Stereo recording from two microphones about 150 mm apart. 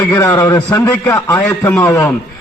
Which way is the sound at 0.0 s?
20° left (ahead or behind).